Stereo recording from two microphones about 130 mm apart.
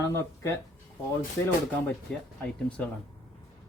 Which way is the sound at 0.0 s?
20° left (ahead or behind).